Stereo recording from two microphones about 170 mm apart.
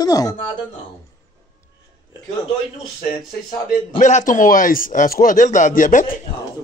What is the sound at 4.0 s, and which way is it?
Speech, 45° left (ahead or behind).